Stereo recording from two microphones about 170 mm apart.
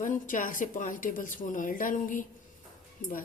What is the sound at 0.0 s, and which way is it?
A woman's voice, 50° left (ahead or behind).